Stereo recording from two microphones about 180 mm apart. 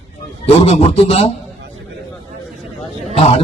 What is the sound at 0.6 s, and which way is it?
Speech, 35° left (ahead or behind).